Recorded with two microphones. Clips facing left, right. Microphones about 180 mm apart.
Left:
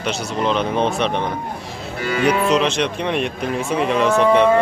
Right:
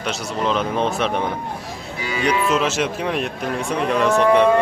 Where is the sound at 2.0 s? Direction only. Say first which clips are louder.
Left 5 dB; 60° left (ahead or behind).